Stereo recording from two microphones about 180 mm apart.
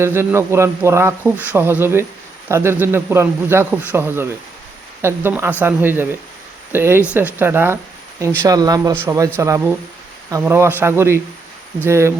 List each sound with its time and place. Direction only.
0.0 s speech: 15° right (ahead or behind)